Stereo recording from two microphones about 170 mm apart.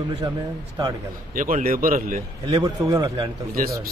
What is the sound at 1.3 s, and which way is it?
Speech, 50° right (ahead or behind).